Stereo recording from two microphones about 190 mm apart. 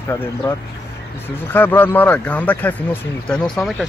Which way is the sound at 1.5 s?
10° left (ahead or behind).